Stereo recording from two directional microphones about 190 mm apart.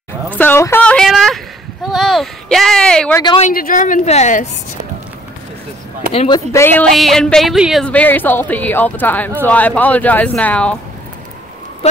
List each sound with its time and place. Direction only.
0.3 s a sound: 10° left (ahead or behind)
3.5 s a woman's voice: 45° left (ahead or behind)
6.1 s a woman's voice: 25° left (ahead or behind); by 10.8 s 5° left (ahead or behind)
11.8 s speech: 35° left (ahead or behind)